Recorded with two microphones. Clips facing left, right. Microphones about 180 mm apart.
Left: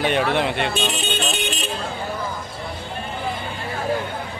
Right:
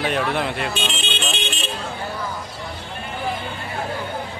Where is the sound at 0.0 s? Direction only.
Centre (ahead or behind).